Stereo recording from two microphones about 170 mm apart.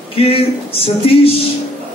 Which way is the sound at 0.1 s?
35° left (ahead or behind).